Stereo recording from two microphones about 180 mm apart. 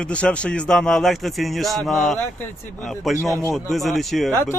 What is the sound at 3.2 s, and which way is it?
Speech, 15° left (ahead or behind).